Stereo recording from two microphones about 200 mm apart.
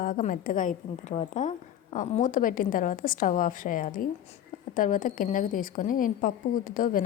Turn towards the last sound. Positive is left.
turn(degrees=45)  # may be behind; listen again after turning